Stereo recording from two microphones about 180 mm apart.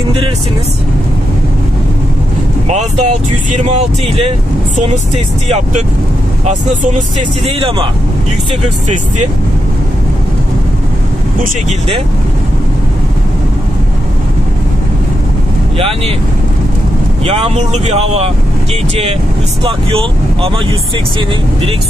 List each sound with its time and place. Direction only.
2.7 s speech: 40° right (ahead or behind)
7.4 s speech: 30° right (ahead or behind)
17.3 s speech: 40° right (ahead or behind)
19.6 s speech: 30° right (ahead or behind)